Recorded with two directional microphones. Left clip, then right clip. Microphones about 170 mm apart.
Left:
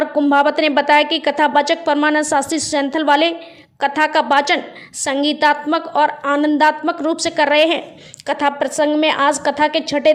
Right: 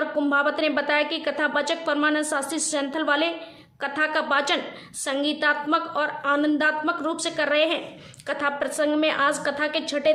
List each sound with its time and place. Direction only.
0.2 s a woman's voice: 40° left (ahead or behind)